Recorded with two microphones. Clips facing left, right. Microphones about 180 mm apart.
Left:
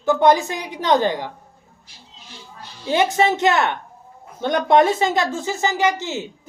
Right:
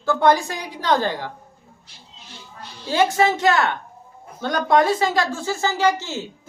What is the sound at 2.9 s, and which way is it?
A woman's voice, 20° left (ahead or behind).